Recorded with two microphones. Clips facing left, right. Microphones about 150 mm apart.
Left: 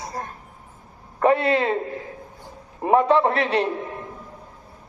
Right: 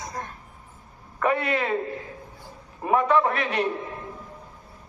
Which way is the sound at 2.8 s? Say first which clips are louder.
Left 4 dB; 30° left (ahead or behind).